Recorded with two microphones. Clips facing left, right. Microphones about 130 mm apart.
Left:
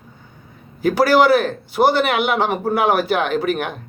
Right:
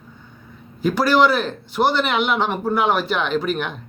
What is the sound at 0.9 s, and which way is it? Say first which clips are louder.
Speech: left 2 dB; 5° left (ahead or behind).